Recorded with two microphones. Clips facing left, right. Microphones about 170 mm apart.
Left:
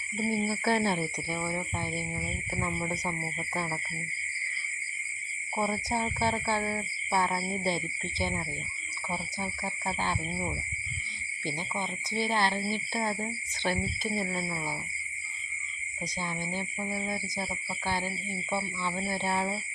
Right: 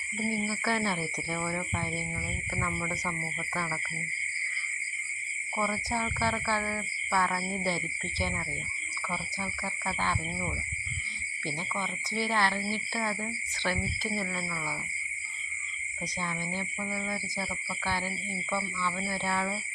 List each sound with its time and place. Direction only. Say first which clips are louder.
0.3 s speech: left 3 dB; 25° left (ahead or behind)
1.4 s speech: even; 15° left (ahead or behind)
5.5 s speech: left 1 dB; 25° left (ahead or behind)
9.4 s speech: left 1 dB; 20° left (ahead or behind)
11.4 s speech: left 1 dB; 20° left (ahead or behind)
16.2 s speech: even; 15° left (ahead or behind)
16.8 s speech: left 1 dB; 25° left (ahead or behind)